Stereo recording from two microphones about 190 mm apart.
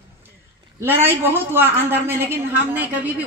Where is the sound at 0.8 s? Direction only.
10° right (ahead or behind).